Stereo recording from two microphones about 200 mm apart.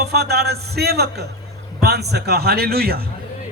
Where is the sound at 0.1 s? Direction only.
55° right (ahead or behind).